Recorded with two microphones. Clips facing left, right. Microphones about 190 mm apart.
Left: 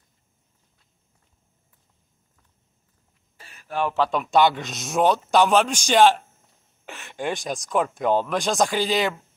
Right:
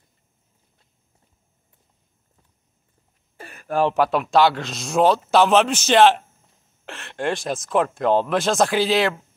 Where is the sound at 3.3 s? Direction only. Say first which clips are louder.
Right 11 dB; 55° right (ahead or behind).